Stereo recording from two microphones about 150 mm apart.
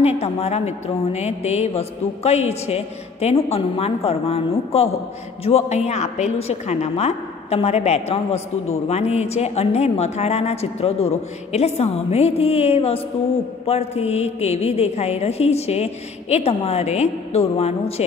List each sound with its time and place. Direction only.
0.0 s a woman's voice: 45° left (ahead or behind)